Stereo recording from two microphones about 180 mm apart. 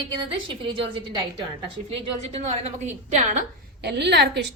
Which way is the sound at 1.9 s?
35° right (ahead or behind).